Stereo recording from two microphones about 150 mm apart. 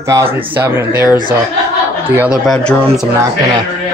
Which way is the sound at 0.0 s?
20° right (ahead or behind).